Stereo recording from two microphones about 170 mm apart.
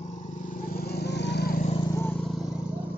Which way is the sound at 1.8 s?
15° left (ahead or behind).